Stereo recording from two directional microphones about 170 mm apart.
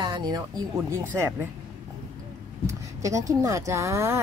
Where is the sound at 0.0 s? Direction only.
25° right (ahead or behind).